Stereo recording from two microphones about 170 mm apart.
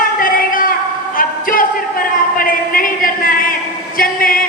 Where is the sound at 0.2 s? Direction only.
55° left (ahead or behind).